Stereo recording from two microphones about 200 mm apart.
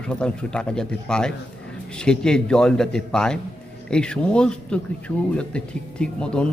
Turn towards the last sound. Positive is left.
turn(degrees=5)  # may be behind; listen again after turning